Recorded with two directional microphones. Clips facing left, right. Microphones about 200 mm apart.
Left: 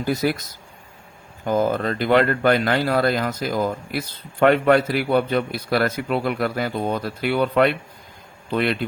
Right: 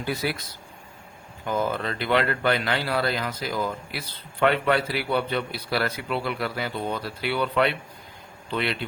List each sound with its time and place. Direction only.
0.0 s speech: 45° left (ahead or behind)